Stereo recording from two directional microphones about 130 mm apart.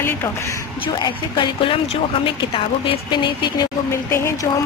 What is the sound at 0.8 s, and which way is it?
Speech, 40° left (ahead or behind).